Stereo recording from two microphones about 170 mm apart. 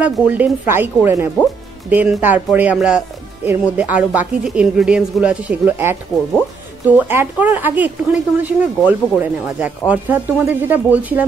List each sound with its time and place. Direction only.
0.0 s speech: 10° right (ahead or behind)